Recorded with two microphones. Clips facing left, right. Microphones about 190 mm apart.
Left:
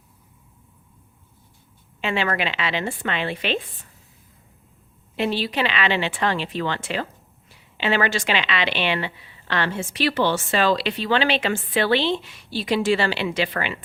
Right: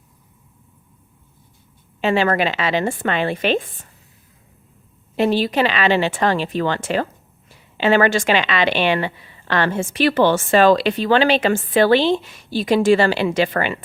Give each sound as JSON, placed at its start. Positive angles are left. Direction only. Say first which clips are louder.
{"t": 2.0, "sound": "a woman's voice", "louder": "right 7 dB", "side_deg": -40}
{"t": 5.1, "sound": "a woman's voice", "louder": "right 6 dB", "side_deg": -45}